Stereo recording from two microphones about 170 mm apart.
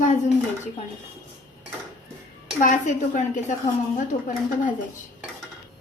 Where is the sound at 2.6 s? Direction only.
50° left (ahead or behind).